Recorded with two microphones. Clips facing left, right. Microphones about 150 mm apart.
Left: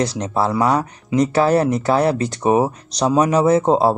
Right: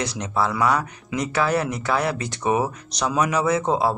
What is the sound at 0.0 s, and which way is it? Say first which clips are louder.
Speech: left 5 dB; 35° left (ahead or behind).